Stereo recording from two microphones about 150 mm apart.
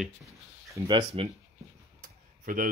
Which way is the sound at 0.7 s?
30° right (ahead or behind).